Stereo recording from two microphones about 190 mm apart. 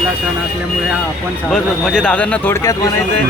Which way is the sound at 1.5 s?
Centre (ahead or behind).